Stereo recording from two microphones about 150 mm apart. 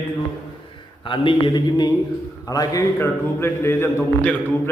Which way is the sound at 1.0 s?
35° left (ahead or behind).